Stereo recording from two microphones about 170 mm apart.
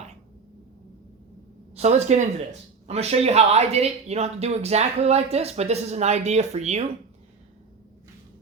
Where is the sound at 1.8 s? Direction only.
40° right (ahead or behind).